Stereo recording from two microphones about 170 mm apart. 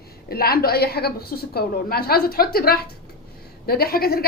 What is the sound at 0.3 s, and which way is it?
A woman's voice, 65° left (ahead or behind).